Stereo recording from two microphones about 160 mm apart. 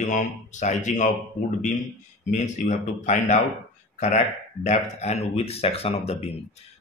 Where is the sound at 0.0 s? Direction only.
50° left (ahead or behind).